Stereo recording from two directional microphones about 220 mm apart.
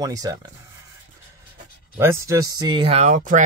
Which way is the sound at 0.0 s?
15° right (ahead or behind).